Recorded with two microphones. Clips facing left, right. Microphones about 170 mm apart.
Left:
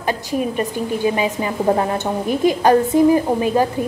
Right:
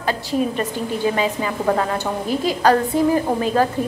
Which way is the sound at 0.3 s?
15° left (ahead or behind).